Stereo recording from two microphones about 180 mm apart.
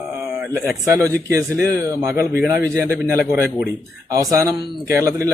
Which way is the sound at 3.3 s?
5° right (ahead or behind).